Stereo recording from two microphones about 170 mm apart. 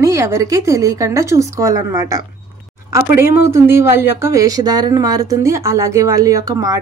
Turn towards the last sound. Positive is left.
turn(degrees=-20)  # may be behind; listen again after turning